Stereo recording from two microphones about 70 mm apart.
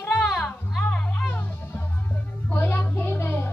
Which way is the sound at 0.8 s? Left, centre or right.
Centre.